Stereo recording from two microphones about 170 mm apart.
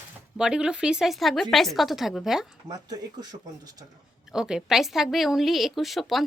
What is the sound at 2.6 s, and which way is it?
Speech, 20° right (ahead or behind).